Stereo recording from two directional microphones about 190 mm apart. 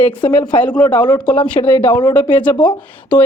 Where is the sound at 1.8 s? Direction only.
25° left (ahead or behind).